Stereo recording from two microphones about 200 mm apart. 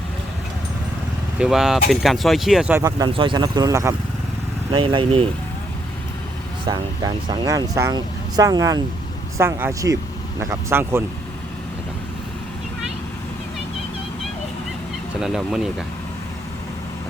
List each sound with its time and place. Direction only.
1.4 s speech: centre (ahead or behind)
2.8 s speech: 20° right (ahead or behind)
6.7 s speech: 20° right (ahead or behind)
15.2 s speech: 5° right (ahead or behind)